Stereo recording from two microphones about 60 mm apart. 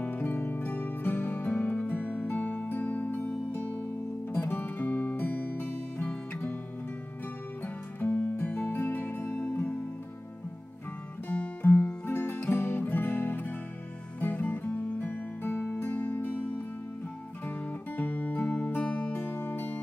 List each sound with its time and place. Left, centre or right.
0.0 s music: left
2.7 s music: left
8.1 s music: left
11.2 s music: left
19.1 s music: left